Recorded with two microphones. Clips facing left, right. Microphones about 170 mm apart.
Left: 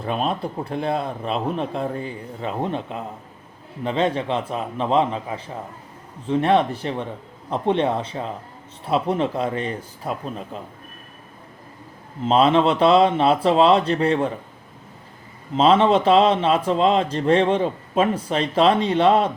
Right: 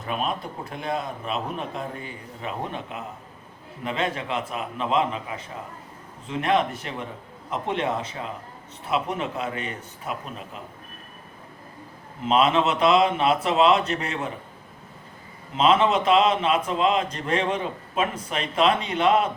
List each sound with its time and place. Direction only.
0.0 s a man's voice: 30° left (ahead or behind)
12.3 s a man's voice: 30° left (ahead or behind)
15.5 s a man's voice: 30° left (ahead or behind)